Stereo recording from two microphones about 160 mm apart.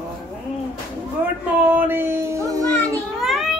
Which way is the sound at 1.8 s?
15° right (ahead or behind).